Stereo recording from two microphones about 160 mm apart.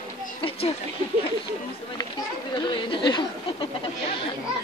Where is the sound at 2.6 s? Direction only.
30° left (ahead or behind).